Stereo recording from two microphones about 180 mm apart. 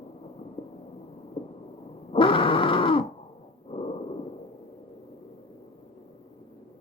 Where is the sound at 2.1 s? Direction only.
30° left (ahead or behind).